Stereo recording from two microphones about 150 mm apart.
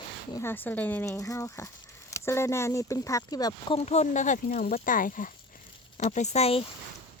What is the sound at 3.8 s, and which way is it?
Speech, 45° left (ahead or behind).